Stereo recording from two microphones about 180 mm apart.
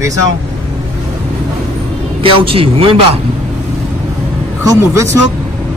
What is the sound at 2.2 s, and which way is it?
A man's voice, 30° right (ahead or behind).